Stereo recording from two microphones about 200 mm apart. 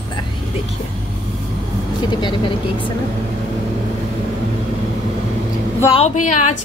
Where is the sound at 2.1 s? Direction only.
25° left (ahead or behind).